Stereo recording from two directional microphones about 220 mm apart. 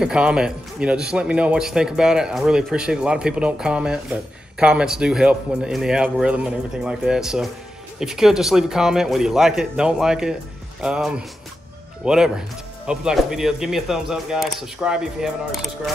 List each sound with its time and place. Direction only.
0.0 s speech: 5° right (ahead or behind)